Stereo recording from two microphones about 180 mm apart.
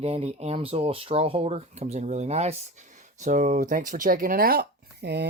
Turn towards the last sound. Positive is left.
turn(degrees=-70)  # may be behind; listen again after turning